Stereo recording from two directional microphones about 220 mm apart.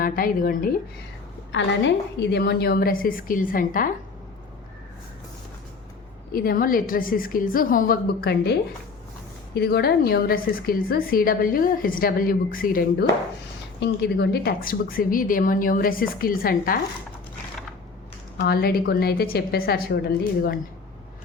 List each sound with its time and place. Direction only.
0.0 s a woman's voice: 40° left (ahead or behind)
1.5 s a woman's voice: 55° left (ahead or behind); by 3.8 s 40° left (ahead or behind)
6.3 s a woman's voice: 40° left (ahead or behind)
9.6 s a woman's voice: 45° left (ahead or behind)
13.7 s a woman's voice: 50° left (ahead or behind)
18.3 s a woman's voice: 45° left (ahead or behind)